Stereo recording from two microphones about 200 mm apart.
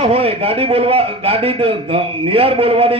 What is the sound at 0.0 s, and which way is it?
A man's voice, 30° right (ahead or behind).